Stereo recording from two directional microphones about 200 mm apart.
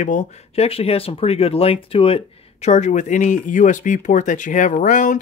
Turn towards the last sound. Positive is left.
turn(degrees=40)  # may be behind; listen again after turning